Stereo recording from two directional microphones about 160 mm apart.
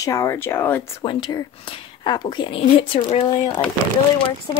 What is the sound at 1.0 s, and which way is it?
Speech, 30° left (ahead or behind).